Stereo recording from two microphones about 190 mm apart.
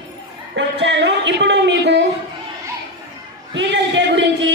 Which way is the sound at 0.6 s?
65° right (ahead or behind).